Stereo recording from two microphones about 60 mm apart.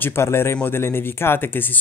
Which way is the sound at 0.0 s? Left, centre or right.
Left.